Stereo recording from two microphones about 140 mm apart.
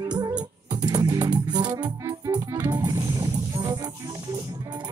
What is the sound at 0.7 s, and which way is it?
Music, 25° right (ahead or behind).